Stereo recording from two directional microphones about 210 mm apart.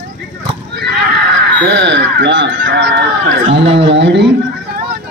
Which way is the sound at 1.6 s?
60° right (ahead or behind).